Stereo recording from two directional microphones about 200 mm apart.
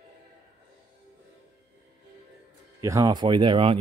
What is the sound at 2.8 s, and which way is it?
Speech, 20° right (ahead or behind).